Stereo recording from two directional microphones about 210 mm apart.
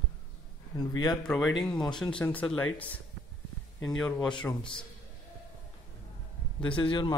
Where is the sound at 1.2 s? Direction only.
Centre (ahead or behind).